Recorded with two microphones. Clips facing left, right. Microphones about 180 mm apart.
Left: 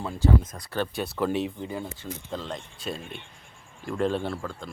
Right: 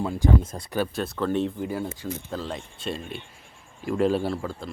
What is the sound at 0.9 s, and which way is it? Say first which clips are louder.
Speech: left 1 dB; 5° left (ahead or behind).